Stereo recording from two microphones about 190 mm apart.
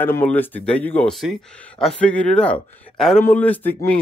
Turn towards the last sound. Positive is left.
turn(degrees=10)  # may be behind; listen again after turning